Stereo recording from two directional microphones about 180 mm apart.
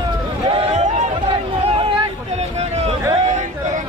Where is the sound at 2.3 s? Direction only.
35° right (ahead or behind).